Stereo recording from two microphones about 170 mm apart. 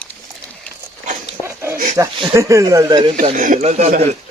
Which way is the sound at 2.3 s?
20° right (ahead or behind).